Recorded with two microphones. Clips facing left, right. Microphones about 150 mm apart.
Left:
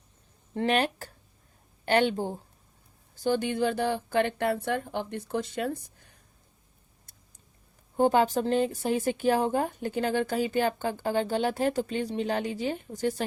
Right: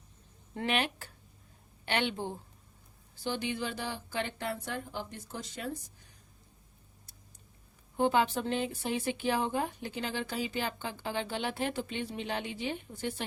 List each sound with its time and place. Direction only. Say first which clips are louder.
0.5 s a woman's voice: left 6 dB; 40° left (ahead or behind); by 5.7 s 65° left (ahead or behind)
7.9 s a woman's voice: left 5 dB; 45° left (ahead or behind)